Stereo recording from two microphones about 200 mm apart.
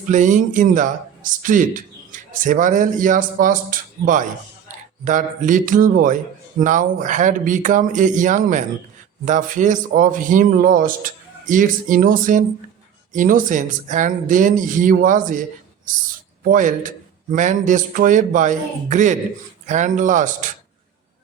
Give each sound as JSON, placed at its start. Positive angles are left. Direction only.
{"t": 0.1, "sound": "speech", "side_deg": -40}